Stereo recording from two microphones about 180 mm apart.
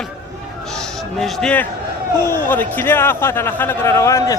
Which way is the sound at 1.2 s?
5° left (ahead or behind).